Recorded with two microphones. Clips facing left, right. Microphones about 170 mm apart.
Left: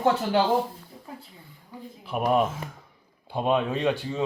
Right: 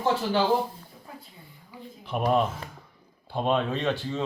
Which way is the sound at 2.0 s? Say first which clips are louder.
Left 1 dB; 5° left (ahead or behind).